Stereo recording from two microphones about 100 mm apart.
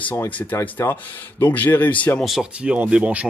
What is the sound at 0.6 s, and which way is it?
Speech, 25° left (ahead or behind).